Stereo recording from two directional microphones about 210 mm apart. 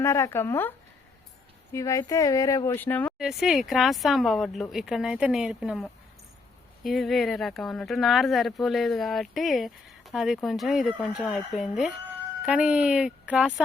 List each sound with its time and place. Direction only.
0.0 s speech: 15° left (ahead or behind)
1.7 s speech: 15° left (ahead or behind)
3.2 s speech: centre (ahead or behind)